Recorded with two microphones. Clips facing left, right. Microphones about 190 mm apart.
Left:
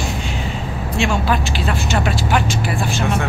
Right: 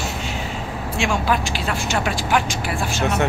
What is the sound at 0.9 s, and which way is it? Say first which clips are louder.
Speech: left 2 dB; 10° right (ahead or behind).